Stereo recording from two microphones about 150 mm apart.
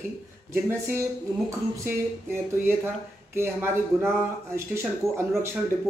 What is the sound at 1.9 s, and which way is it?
Speech, 15° right (ahead or behind).